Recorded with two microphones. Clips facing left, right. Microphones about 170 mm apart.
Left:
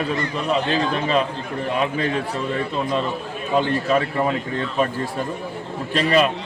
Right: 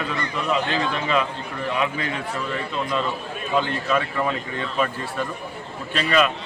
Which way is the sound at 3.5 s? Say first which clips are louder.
Left 3 dB; 35° left (ahead or behind).